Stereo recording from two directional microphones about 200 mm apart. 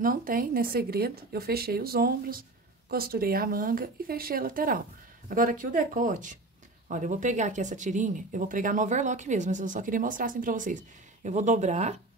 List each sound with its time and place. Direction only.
0.0 s speech: 45° right (ahead or behind)